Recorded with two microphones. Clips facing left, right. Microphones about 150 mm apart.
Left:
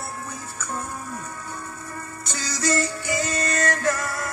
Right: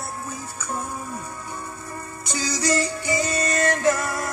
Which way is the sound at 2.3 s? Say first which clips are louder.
Right 2 dB; 15° right (ahead or behind).